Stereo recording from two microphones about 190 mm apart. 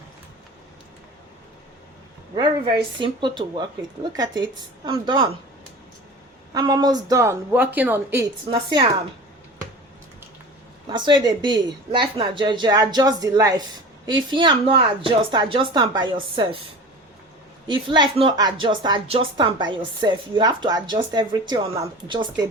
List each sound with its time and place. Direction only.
2.3 s a woman's voice: 25° right (ahead or behind)
4.9 s a woman's voice: 25° right (ahead or behind)
6.5 s a woman's voice: 20° right (ahead or behind)
10.8 s a woman's voice: 25° right (ahead or behind)
17.7 s a woman's voice: 25° right (ahead or behind)